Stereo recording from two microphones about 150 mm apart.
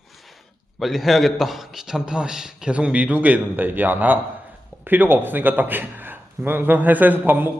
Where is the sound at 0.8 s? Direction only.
Centre (ahead or behind).